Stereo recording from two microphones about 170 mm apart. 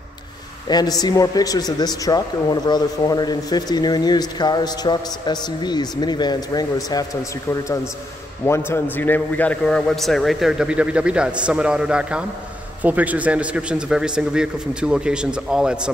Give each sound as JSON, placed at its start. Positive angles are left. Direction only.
{"t": 0.7, "sound": "a man's voice", "side_deg": 25}
{"t": 8.5, "sound": "a man's voice", "side_deg": 15}